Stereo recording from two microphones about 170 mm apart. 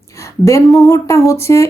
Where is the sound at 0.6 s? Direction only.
Centre (ahead or behind).